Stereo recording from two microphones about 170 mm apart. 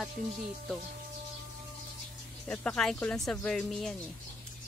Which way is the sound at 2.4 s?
5° left (ahead or behind).